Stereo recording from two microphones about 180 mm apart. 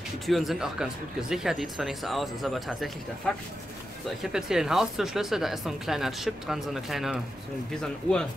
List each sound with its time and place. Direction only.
0.3 s speech: centre (ahead or behind)